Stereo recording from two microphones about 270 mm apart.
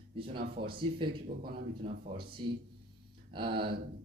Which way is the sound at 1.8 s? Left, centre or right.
Centre.